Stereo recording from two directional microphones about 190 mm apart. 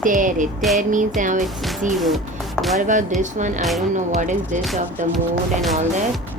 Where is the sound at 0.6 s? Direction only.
Centre (ahead or behind).